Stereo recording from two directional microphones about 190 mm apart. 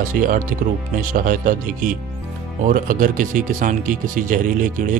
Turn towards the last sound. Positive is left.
turn(degrees=-45)  # may be behind; listen again after turning